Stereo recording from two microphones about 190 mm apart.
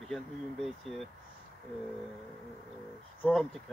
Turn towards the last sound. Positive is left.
turn(degrees=0)  # may be behind; listen again after turning